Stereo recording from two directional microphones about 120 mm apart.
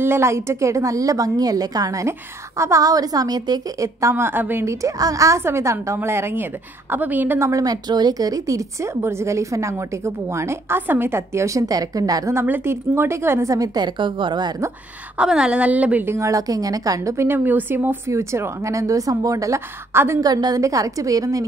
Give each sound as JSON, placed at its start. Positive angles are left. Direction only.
{"t": 0.0, "sound": "a woman's voice", "side_deg": -20}
{"t": 15.1, "sound": "a woman's voice", "side_deg": -5}
{"t": 20.2, "sound": "a woman's voice", "side_deg": -35}